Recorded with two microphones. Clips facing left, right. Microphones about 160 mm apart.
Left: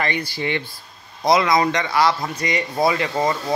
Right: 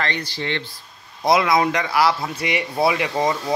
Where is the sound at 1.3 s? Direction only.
5° right (ahead or behind).